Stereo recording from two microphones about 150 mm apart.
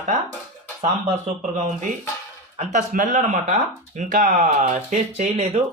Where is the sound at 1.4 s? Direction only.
55° right (ahead or behind).